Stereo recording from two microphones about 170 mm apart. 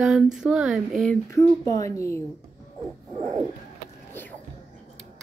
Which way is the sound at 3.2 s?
20° right (ahead or behind).